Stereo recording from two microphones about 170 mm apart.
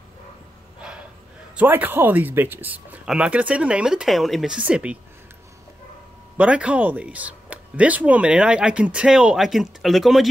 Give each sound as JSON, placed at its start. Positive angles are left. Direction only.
{"t": 0.7, "sound": "a sound", "side_deg": -5}
{"t": 1.6, "sound": "speech", "side_deg": -10}
{"t": 6.3, "sound": "speech", "side_deg": -10}